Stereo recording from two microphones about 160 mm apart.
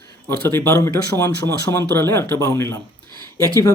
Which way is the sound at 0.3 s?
15° left (ahead or behind).